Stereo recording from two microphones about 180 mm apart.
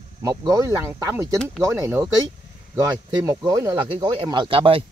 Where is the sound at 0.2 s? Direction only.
20° right (ahead or behind).